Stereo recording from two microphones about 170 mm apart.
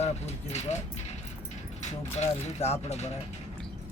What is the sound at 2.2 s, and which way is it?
Speech, 40° left (ahead or behind).